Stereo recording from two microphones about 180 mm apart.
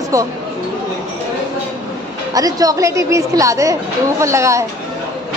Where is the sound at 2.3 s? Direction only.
20° right (ahead or behind).